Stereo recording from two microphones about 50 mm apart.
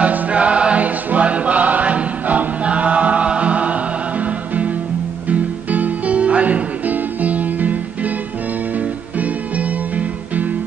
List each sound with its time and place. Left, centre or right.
0.0 s music: right